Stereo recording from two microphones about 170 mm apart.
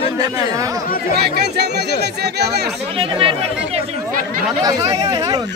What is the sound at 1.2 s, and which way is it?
Speech, 75° right (ahead or behind).